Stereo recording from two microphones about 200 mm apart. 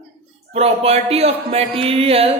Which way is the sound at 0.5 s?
30° right (ahead or behind).